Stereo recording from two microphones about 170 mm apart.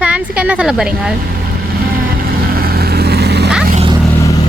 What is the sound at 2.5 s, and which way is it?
Vehicle, 60° right (ahead or behind).